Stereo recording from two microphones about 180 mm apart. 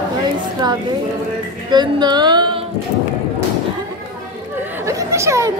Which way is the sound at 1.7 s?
25° right (ahead or behind).